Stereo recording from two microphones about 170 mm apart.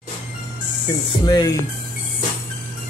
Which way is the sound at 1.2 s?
25° left (ahead or behind).